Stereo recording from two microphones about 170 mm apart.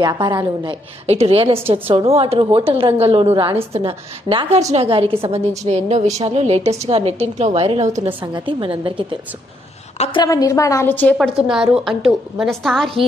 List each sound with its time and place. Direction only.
0.0 s a woman's voice: 25° right (ahead or behind)
9.9 s a woman's voice: 40° left (ahead or behind)
10.2 s a woman's voice: 20° left (ahead or behind)
11.1 s a woman's voice: centre (ahead or behind)